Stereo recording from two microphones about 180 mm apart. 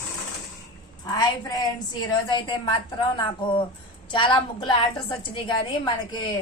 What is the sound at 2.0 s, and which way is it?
A woman's voice, 25° left (ahead or behind).